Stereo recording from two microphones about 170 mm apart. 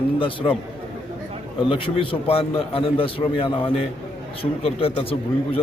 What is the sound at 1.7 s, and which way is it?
A man's voice, 30° left (ahead or behind).